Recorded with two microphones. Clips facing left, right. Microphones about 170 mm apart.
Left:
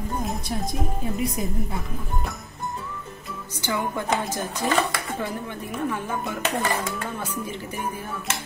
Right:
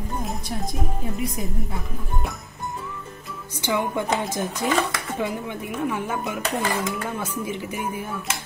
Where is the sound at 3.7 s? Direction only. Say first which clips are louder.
Right 2 dB; 20° right (ahead or behind).